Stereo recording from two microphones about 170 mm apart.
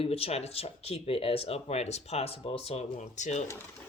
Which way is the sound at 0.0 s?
35° left (ahead or behind).